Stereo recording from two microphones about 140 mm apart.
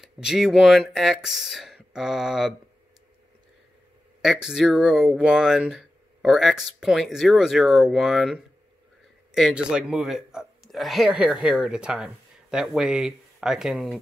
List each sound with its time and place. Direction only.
0.0 s speech: 5° right (ahead or behind)
4.2 s speech: 5° right (ahead or behind)